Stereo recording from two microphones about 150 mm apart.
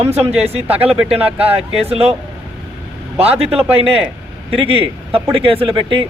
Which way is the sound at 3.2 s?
40° right (ahead or behind).